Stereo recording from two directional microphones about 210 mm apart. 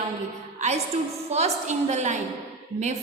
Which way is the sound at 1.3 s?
30° right (ahead or behind).